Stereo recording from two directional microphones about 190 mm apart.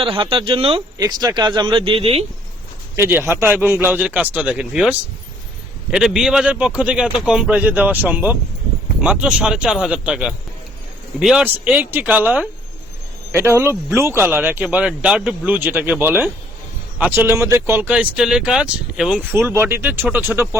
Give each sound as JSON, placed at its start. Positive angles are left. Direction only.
{"t": 0.0, "sound": "speech", "side_deg": -30}
{"t": 2.9, "sound": "a man's voice", "side_deg": -10}